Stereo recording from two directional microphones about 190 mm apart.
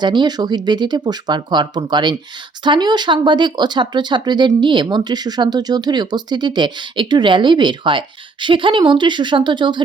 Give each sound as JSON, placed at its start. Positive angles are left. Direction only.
{"t": 0.0, "sound": "speech", "side_deg": -25}